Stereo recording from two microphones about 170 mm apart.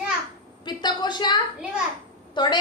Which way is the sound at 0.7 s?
25° left (ahead or behind).